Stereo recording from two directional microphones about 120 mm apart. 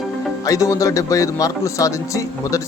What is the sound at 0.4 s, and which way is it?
Speech, 30° left (ahead or behind).